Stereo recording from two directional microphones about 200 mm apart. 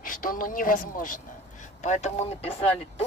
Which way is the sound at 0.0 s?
45° left (ahead or behind).